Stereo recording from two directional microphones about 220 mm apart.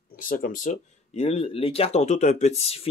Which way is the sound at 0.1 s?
40° left (ahead or behind).